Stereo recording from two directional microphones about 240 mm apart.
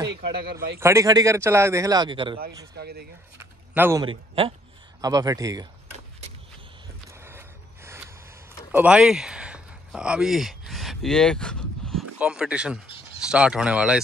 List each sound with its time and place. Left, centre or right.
0.1 s speech: right
0.7 s a man's voice: centre
2.7 s speech: right
3.7 s a man's voice: centre
4.0 s a man's voice: right
7.1 s a sound: centre
13.2 s speech: centre